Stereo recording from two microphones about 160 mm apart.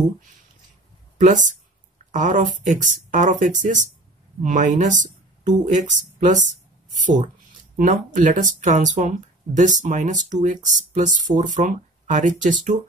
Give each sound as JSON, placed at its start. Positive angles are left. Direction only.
{"t": 1.2, "sound": "speech", "side_deg": -50}